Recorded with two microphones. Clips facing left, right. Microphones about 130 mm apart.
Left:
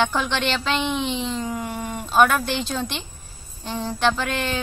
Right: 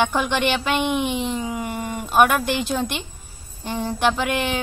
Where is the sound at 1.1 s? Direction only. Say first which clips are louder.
Right 2 dB; 55° right (ahead or behind).